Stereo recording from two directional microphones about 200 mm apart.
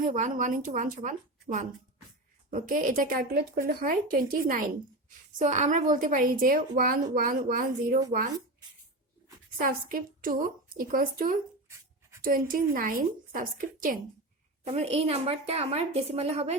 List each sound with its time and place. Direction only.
0.0 s a woman's voice: 40° right (ahead or behind)
2.5 s a woman's voice: 45° right (ahead or behind)
9.6 s a woman's voice: 45° right (ahead or behind)
14.6 s a woman's voice: 30° right (ahead or behind)